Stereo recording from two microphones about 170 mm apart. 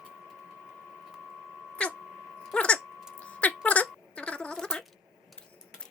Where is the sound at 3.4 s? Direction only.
10° left (ahead or behind).